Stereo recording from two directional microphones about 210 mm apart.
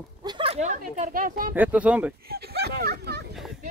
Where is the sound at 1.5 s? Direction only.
5° right (ahead or behind).